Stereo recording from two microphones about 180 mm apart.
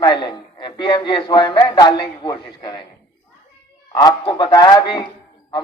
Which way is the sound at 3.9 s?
25° left (ahead or behind).